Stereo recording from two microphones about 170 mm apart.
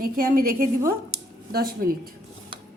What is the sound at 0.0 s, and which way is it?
A woman's voice, 60° right (ahead or behind).